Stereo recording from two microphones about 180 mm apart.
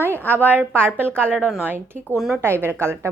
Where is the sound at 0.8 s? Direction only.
10° right (ahead or behind).